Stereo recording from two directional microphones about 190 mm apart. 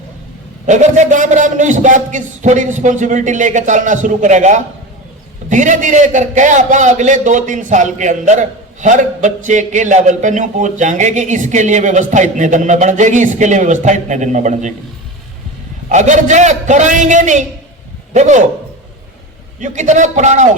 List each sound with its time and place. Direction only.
0.7 s a man's voice: 40° right (ahead or behind)
15.9 s a man's voice: 40° right (ahead or behind)
19.5 s a man's voice: 40° right (ahead or behind)